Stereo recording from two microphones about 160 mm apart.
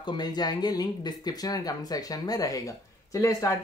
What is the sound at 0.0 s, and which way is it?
Speech, 25° left (ahead or behind).